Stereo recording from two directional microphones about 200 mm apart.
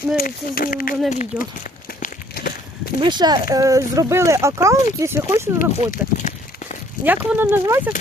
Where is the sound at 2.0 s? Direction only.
50° left (ahead or behind).